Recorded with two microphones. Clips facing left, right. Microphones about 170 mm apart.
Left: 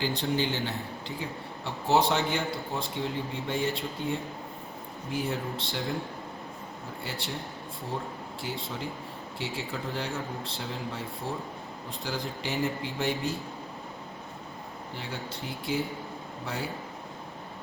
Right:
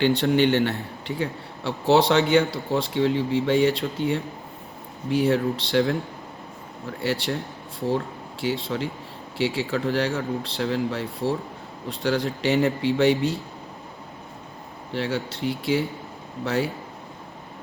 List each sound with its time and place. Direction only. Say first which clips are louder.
0.0 s a man's voice: right 9 dB; 70° right (ahead or behind)
7.0 s a man's voice: right 12 dB; 75° right (ahead or behind)
8.4 s a man's voice: right 10 dB; 80° right
14.9 s speech: right 12 dB; 80° right